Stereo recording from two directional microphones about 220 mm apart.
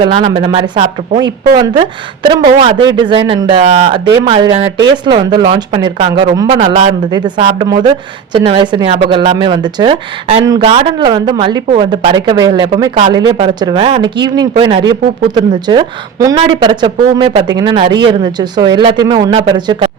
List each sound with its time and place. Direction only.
0.0 s speech: 20° right (ahead or behind)